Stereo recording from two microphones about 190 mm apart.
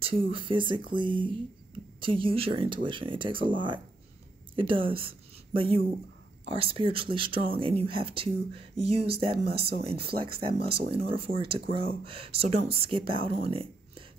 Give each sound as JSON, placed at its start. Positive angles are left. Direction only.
{"t": 0.0, "sound": "a woman's voice", "side_deg": -25}
{"t": 9.5, "sound": "speech", "side_deg": -55}
{"t": 9.8, "sound": "speech", "side_deg": -30}